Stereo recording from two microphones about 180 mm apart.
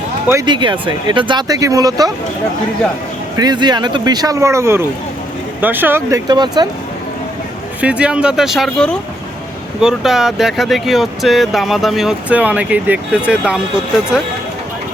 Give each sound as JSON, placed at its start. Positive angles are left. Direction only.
{"t": 0.4, "sound": "speech", "side_deg": -25}
{"t": 3.3, "sound": "speech", "side_deg": -25}
{"t": 7.8, "sound": "speech", "side_deg": -5}